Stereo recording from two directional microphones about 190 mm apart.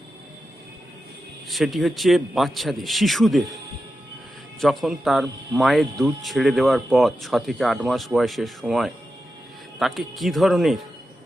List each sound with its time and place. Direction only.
1.5 s speech: centre (ahead or behind)
4.6 s speech: centre (ahead or behind)